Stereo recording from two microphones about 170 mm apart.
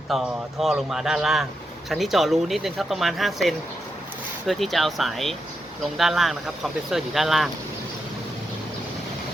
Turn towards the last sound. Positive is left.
turn(degrees=0)  # may be behind; listen again after turning